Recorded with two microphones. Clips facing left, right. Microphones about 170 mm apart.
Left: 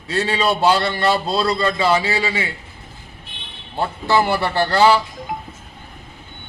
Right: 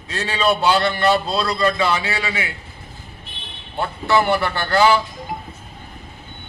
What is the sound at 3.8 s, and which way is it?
A man's voice, 30° left (ahead or behind).